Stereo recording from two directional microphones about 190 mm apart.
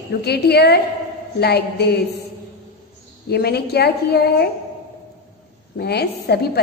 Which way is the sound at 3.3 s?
55° left (ahead or behind).